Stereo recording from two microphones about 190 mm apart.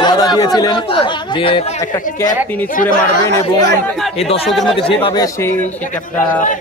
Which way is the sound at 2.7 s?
45° left (ahead or behind).